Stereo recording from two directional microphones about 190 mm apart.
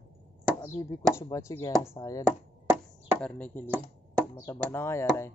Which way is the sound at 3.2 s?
5° left (ahead or behind).